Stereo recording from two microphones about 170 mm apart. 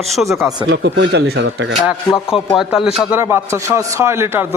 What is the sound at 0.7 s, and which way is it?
Speech, 90° right.